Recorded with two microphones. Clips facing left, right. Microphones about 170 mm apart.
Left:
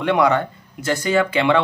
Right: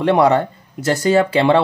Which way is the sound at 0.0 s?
35° right (ahead or behind).